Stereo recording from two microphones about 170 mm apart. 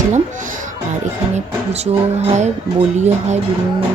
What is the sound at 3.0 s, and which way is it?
Speech, 40° right (ahead or behind).